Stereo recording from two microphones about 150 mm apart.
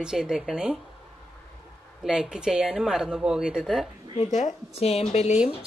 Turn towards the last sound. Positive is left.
turn(degrees=45)  # may be behind; listen again after turning